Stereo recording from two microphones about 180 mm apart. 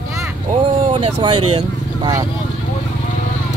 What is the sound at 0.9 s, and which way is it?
Speech, 30° right (ahead or behind).